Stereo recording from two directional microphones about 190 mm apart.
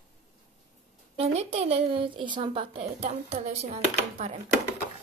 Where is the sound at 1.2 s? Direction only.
35° right (ahead or behind).